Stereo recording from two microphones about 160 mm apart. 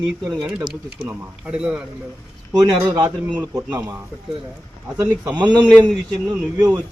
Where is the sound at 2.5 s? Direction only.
25° right (ahead or behind).